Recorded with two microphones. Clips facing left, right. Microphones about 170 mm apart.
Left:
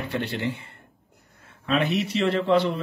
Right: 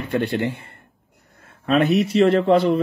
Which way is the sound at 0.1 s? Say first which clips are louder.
Right 8 dB; 50° right (ahead or behind).